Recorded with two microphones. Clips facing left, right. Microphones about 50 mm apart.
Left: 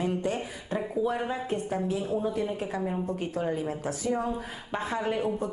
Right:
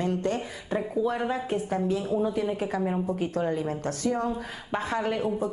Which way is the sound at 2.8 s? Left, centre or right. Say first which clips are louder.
Right 3 dB; centre.